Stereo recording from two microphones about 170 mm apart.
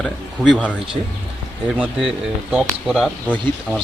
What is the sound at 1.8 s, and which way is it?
Speech, 5° right (ahead or behind).